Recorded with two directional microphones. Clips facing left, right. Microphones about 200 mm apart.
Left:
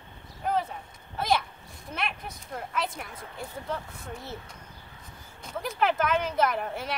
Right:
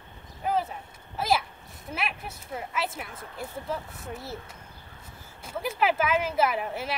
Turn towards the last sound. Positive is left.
turn(degrees=-5)  # may be behind; listen again after turning